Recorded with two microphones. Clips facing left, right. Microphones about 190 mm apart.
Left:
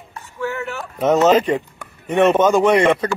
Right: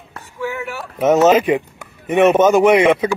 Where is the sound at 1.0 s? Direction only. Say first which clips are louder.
Right 2 dB; 10° right (ahead or behind).